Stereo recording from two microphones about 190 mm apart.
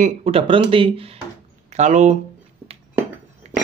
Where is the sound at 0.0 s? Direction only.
30° right (ahead or behind).